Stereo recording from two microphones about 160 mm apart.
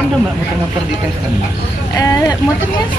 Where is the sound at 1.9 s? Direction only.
20° left (ahead or behind).